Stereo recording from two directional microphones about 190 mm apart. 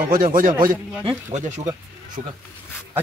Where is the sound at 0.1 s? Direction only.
45° right (ahead or behind).